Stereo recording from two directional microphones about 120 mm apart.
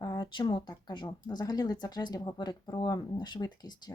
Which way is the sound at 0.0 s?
35° left (ahead or behind).